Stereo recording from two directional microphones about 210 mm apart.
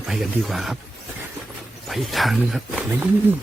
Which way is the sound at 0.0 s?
Centre (ahead or behind).